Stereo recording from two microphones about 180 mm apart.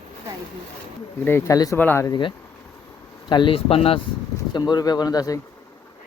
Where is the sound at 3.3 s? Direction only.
30° left (ahead or behind).